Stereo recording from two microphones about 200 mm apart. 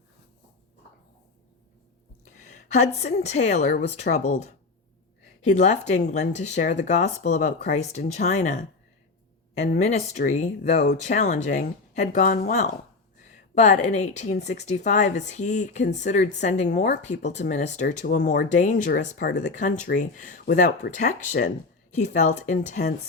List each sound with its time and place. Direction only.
2.2 s a woman's voice: 35° left (ahead or behind)